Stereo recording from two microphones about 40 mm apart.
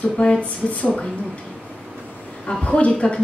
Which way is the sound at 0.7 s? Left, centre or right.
Left.